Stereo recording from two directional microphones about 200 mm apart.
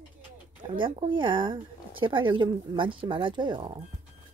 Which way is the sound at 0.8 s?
25° right (ahead or behind).